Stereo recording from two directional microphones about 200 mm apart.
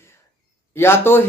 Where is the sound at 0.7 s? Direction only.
10° left (ahead or behind).